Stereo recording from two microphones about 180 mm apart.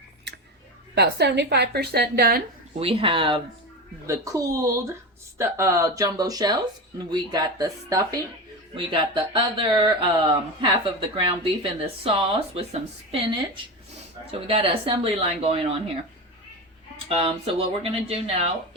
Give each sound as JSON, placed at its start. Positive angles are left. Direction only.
{"t": 0.3, "sound": "a sound", "side_deg": -75}
{"t": 0.9, "sound": "a woman's voice", "side_deg": -70}
{"t": 2.7, "sound": "speech", "side_deg": -30}
{"t": 4.0, "sound": "speech", "side_deg": -15}
{"t": 17.1, "sound": "speech", "side_deg": -30}